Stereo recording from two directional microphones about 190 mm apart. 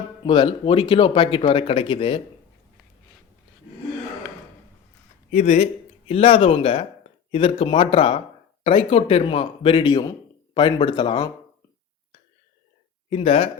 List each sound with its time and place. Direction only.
0.2 s speech: 25° left (ahead or behind)
5.3 s speech: 40° left (ahead or behind)
13.1 s speech: 30° left (ahead or behind)